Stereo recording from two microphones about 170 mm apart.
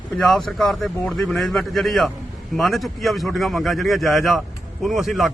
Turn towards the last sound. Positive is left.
turn(degrees=0)  # may be behind; listen again after turning